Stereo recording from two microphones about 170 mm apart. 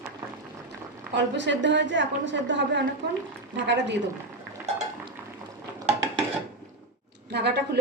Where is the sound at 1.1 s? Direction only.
90° right.